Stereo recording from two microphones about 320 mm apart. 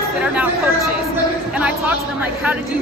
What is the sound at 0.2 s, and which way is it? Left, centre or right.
Speech, centre.